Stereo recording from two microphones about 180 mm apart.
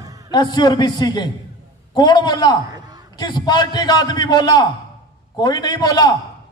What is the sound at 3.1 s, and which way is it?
A man's voice, 20° left (ahead or behind).